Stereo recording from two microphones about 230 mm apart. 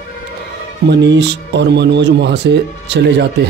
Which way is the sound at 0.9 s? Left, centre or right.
Right.